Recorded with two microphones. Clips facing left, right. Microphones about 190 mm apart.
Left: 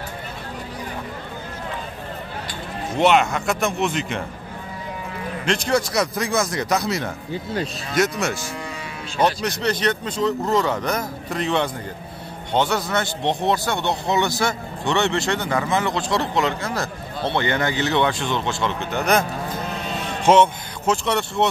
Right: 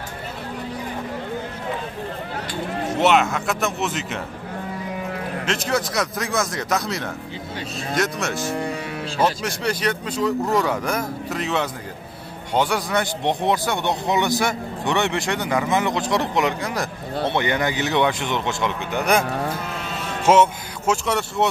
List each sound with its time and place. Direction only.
3.0 s speech: centre (ahead or behind)
5.4 s speech: centre (ahead or behind)
20.2 s speech: 5° right (ahead or behind)